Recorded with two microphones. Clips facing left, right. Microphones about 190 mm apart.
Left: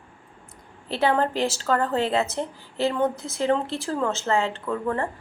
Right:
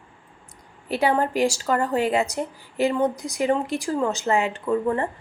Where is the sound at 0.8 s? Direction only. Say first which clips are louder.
Right 1 dB; 15° right (ahead or behind).